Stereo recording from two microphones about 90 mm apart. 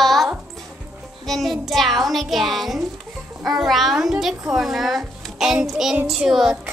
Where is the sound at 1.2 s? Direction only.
Centre (ahead or behind).